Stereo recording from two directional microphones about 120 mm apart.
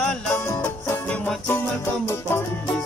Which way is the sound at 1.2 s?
10° left (ahead or behind).